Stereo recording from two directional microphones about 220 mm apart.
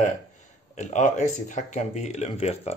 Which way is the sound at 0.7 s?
35° left (ahead or behind).